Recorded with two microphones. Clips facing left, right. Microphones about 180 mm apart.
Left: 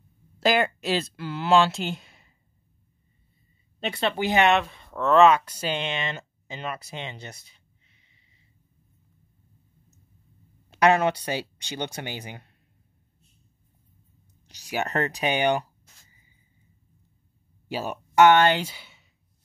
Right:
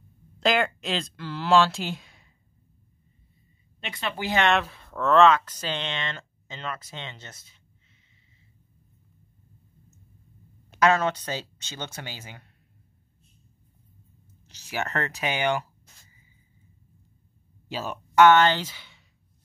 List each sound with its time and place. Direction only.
0.4 s speech: 5° left (ahead or behind)
3.8 s speech: 35° left (ahead or behind)
4.2 s speech: 20° left (ahead or behind)
4.5 s speech: centre (ahead or behind); by 7.5 s 15° left (ahead or behind)
10.9 s speech: 15° left (ahead or behind)
14.5 s speech: 15° left (ahead or behind)
17.7 s speech: 10° left (ahead or behind)